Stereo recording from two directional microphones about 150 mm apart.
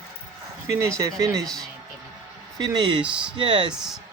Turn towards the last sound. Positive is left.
turn(degrees=-30)  # may be behind; listen again after turning